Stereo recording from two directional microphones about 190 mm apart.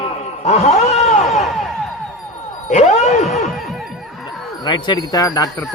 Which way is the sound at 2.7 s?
35° left (ahead or behind).